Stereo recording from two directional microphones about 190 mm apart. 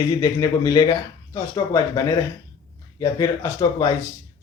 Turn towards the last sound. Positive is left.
turn(degrees=20)  # may be behind; listen again after turning